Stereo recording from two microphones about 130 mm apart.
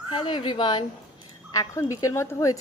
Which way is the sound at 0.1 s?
40° left (ahead or behind).